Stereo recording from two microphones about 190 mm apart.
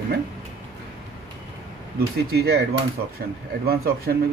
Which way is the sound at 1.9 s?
55° right (ahead or behind).